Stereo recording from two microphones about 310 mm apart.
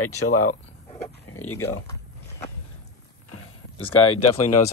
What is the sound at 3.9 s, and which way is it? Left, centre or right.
Speech, left.